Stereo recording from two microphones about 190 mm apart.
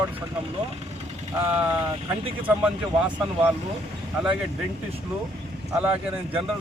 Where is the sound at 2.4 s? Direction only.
5° right (ahead or behind).